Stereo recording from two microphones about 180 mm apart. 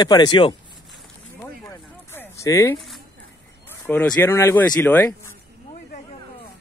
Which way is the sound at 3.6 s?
10° left (ahead or behind).